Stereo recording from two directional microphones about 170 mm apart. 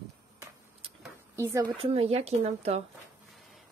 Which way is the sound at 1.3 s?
20° right (ahead or behind).